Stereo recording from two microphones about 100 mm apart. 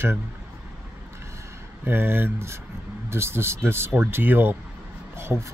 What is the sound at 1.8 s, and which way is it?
Speech, 20° right (ahead or behind).